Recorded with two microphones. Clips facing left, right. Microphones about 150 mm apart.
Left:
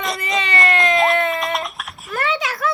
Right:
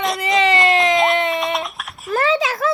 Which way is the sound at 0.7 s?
20° right (ahead or behind).